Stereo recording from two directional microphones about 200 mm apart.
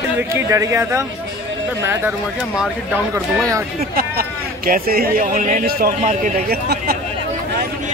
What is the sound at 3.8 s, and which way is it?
Speech, 50° right (ahead or behind).